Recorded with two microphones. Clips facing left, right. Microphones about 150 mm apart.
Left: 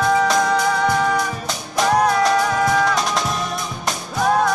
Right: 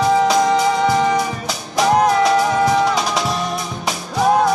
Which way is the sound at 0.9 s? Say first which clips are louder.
Right 3 dB; 20° right (ahead or behind).